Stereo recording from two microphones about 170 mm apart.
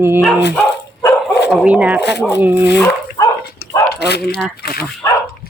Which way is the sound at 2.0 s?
85° left.